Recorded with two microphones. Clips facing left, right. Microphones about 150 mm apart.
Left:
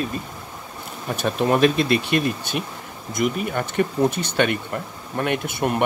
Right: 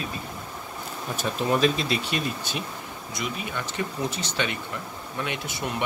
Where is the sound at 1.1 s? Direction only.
60° left (ahead or behind).